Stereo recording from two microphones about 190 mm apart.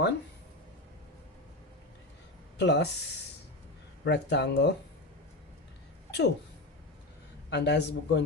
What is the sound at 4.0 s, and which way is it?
Speech, 65° left (ahead or behind).